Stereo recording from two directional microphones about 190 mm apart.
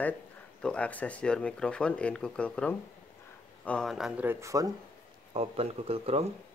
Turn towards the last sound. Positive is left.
turn(degrees=-30)  # may be behind; listen again after turning